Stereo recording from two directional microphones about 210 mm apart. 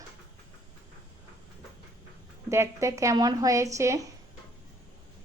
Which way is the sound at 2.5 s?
15° right (ahead or behind).